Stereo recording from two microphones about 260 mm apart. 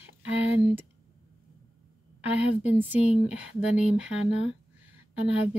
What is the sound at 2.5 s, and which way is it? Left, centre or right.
Speech, centre.